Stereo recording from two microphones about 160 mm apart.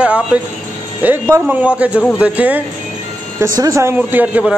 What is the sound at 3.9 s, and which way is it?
Speech, 10° right (ahead or behind).